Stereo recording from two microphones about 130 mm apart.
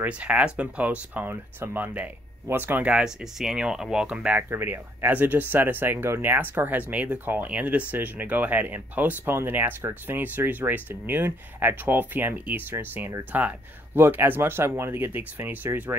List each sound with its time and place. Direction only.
0.0 s speech: 10° right (ahead or behind)